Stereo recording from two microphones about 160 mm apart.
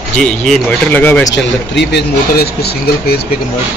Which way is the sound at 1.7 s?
80° left.